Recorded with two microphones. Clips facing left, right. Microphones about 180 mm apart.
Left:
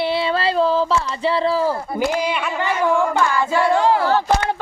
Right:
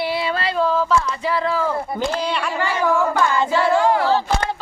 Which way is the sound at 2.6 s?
20° left (ahead or behind).